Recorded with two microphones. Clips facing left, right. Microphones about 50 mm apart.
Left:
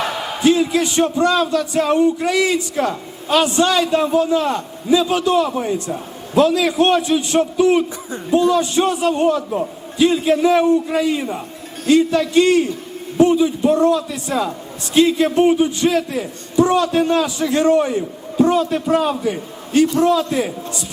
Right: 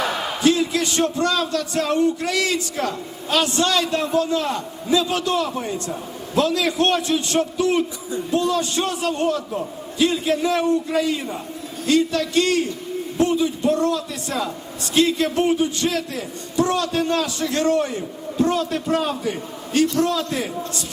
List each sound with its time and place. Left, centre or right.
0.4 s speech: centre